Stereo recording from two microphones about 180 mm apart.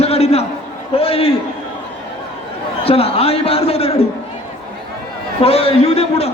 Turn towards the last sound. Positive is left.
turn(degrees=35)  # may be behind; listen again after turning